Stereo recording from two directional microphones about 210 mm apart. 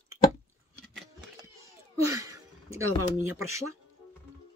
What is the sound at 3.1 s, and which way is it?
Speech, 90° right.